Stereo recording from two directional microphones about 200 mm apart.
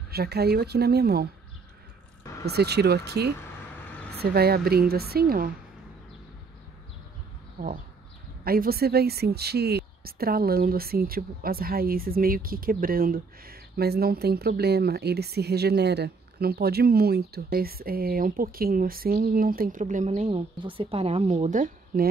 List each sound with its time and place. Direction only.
0.1 s speech: 55° right (ahead or behind)
2.4 s speech: 55° right (ahead or behind)
8.5 s speech: 50° right (ahead or behind)